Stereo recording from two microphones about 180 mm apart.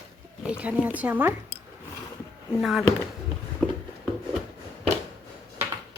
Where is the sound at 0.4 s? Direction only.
5° right (ahead or behind).